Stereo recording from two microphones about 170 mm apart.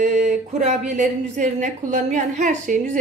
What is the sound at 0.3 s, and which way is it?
A woman's voice, 45° right (ahead or behind).